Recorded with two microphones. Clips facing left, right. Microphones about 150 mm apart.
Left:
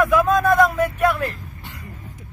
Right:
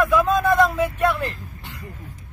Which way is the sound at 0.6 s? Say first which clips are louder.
Left 1 dB; centre (ahead or behind).